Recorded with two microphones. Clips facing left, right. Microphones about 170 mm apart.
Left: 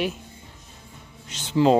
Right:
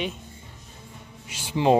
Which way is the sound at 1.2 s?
10° right (ahead or behind).